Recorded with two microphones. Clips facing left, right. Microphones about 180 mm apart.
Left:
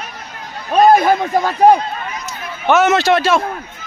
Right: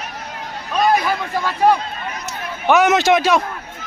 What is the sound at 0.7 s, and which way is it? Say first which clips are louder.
A man's voice: left 7 dB; 50° left (ahead or behind).